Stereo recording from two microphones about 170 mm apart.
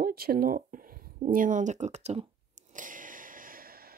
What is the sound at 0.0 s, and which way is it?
Speech, 60° right (ahead or behind).